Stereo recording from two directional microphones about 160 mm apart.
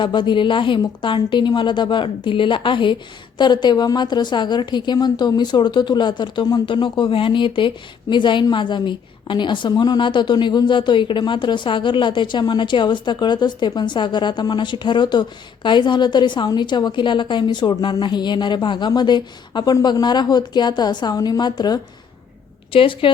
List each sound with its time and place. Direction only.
0.0 s a woman's voice: 30° left (ahead or behind)